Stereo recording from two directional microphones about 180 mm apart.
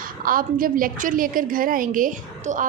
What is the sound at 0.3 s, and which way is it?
A woman's voice, 50° right (ahead or behind).